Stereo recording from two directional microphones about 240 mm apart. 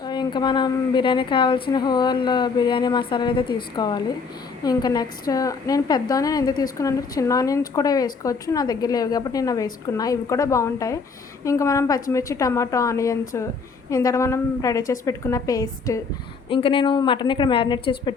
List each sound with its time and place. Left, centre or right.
0.0 s a woman's voice: centre